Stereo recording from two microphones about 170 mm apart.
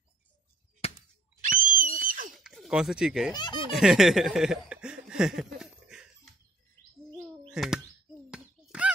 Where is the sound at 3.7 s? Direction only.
Centre (ahead or behind).